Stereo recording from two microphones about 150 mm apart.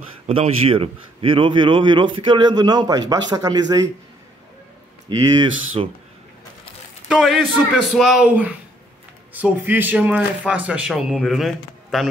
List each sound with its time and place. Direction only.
0.3 s a man's voice: 40° right (ahead or behind)
5.3 s a man's voice: 30° right (ahead or behind)
7.1 s a man's voice: 5° right (ahead or behind)